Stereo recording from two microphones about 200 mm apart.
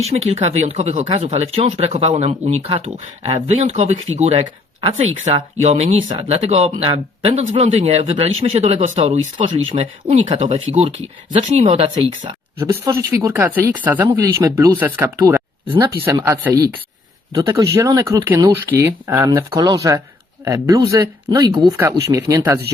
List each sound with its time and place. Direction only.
0.0 s speech: 30° right (ahead or behind)
12.5 s speech: 15° right (ahead or behind)